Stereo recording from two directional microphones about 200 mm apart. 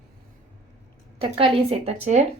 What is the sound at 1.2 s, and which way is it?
Speech, 25° right (ahead or behind).